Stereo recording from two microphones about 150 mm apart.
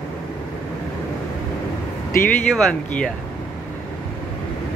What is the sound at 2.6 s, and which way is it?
Speech, 5° left (ahead or behind).